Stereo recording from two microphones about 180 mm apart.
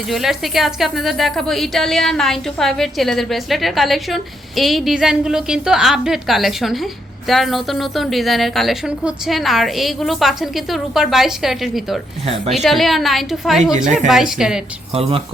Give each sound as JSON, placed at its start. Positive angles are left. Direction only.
{"t": 0.1, "sound": "a woman's voice", "side_deg": 0}